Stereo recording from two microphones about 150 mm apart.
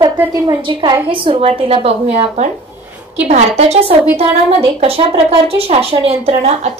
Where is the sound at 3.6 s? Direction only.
45° right (ahead or behind).